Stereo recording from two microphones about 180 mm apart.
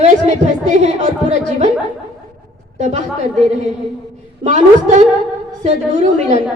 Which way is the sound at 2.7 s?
45° right (ahead or behind).